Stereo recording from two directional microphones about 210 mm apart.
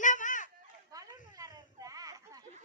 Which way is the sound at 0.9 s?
15° right (ahead or behind).